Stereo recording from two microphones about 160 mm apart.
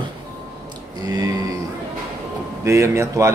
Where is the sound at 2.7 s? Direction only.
20° right (ahead or behind).